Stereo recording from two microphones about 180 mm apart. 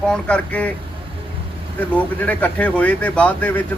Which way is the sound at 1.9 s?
10° left (ahead or behind).